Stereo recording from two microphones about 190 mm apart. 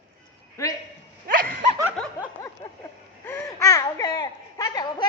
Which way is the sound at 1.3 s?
50° right (ahead or behind).